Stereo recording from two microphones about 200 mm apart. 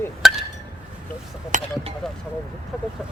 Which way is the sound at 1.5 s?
40° right (ahead or behind).